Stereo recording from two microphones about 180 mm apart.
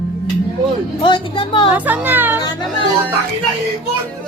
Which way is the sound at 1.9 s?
10° right (ahead or behind).